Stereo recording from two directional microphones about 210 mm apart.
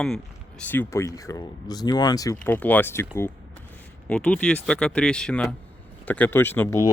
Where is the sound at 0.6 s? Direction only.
10° left (ahead or behind).